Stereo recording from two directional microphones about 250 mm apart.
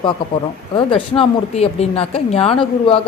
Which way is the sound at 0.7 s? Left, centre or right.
Left.